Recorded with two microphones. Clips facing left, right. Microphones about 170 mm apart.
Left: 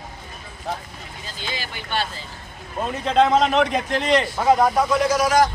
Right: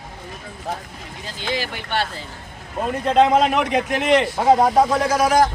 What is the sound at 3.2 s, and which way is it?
A man's voice, 10° right (ahead or behind).